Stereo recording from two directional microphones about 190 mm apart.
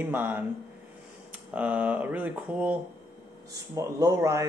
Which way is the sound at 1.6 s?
10° right (ahead or behind).